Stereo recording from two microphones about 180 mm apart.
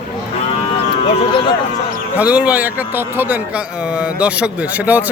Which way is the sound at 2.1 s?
5° right (ahead or behind).